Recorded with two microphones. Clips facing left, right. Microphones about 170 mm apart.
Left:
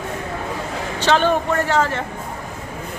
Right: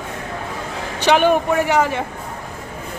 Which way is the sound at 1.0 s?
15° right (ahead or behind).